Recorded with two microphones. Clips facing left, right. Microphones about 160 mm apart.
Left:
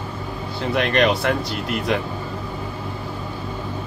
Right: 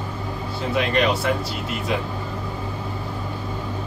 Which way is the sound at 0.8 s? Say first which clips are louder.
Left 2 dB; 70° left (ahead or behind).